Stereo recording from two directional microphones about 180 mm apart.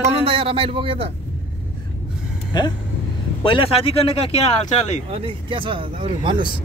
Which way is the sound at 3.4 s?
30° left (ahead or behind).